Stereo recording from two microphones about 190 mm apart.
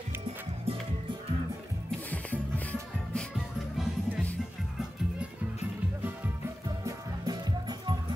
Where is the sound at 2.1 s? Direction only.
10° left (ahead or behind).